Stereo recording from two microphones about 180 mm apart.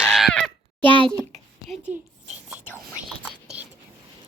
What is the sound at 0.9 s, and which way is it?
Speech, 30° right (ahead or behind).